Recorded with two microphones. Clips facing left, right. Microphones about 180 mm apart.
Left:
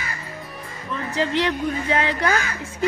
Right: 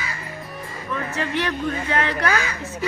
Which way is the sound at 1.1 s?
15° left (ahead or behind).